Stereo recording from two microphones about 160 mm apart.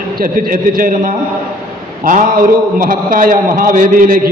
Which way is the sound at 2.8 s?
60° right (ahead or behind).